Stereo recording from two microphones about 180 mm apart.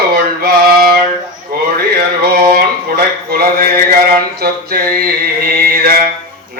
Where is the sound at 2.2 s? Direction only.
60° right (ahead or behind).